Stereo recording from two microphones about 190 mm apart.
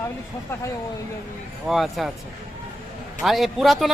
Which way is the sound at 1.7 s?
Centre (ahead or behind).